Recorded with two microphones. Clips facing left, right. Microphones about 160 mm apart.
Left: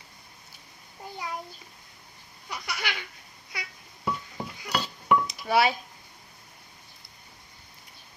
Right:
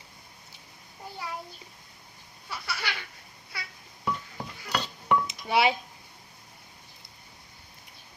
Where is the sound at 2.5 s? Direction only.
15° left (ahead or behind).